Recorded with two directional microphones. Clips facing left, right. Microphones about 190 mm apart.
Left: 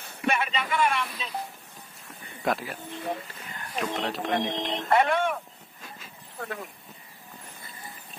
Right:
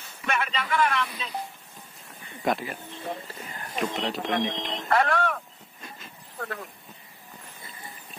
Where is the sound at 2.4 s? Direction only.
Centre (ahead or behind).